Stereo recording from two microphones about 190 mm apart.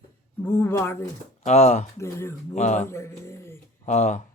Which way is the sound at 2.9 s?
15° left (ahead or behind).